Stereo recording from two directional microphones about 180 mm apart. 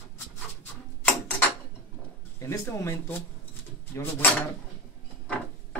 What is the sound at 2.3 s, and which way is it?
Speech, 15° left (ahead or behind).